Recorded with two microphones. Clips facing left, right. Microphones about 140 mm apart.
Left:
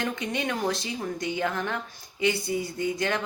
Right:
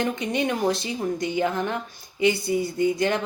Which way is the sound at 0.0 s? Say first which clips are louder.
Right 5 dB; 15° right (ahead or behind).